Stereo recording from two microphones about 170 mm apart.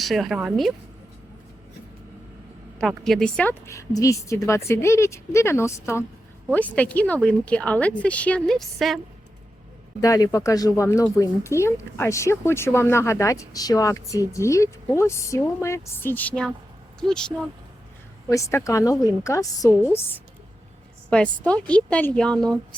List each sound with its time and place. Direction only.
0.0 s a woman's voice: centre (ahead or behind)
2.7 s speech: centre (ahead or behind)
10.0 s a woman's voice: 20° left (ahead or behind); by 17.3 s 5° left (ahead or behind)
18.3 s a woman's voice: 20° left (ahead or behind)